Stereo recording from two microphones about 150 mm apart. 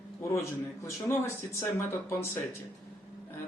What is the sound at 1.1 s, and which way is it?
Speech, 20° left (ahead or behind).